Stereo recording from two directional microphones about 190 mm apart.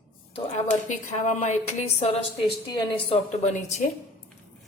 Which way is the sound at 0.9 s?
40° left (ahead or behind).